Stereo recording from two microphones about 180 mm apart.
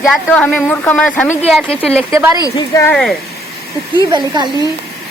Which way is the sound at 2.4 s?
20° left (ahead or behind).